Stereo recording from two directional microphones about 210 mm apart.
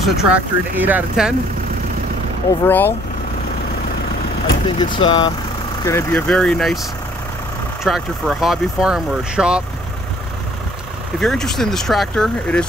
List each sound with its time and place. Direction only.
0.0 s speech: 5° right (ahead or behind)
2.6 s speech: 10° left (ahead or behind)
4.6 s speech: 20° left (ahead or behind)
5.9 s speech: 10° left (ahead or behind)
7.8 s speech: centre (ahead or behind)
11.1 s speech: centre (ahead or behind)